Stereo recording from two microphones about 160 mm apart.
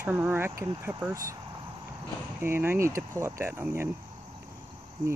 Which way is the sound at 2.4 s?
15° right (ahead or behind).